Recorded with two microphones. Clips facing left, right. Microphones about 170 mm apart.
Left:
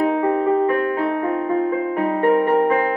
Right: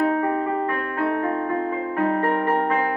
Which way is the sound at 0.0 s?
15° left (ahead or behind).